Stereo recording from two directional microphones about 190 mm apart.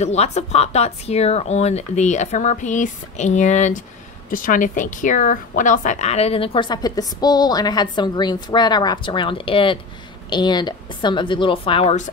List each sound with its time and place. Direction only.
0.0 s a woman's voice: 35° left (ahead or behind)